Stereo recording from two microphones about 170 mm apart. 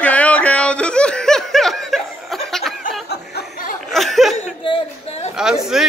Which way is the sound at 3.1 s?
60° left (ahead or behind).